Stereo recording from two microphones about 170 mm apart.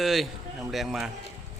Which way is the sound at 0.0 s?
Centre (ahead or behind).